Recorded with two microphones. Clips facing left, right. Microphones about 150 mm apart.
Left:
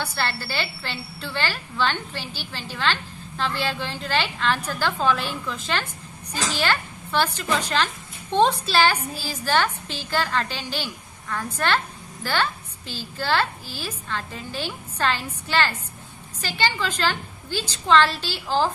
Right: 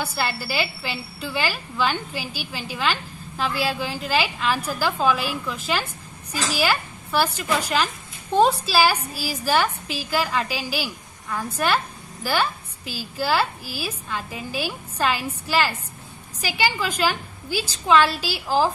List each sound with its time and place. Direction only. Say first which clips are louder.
0.0 s a woman's voice: right 1 dB; 10° right (ahead or behind)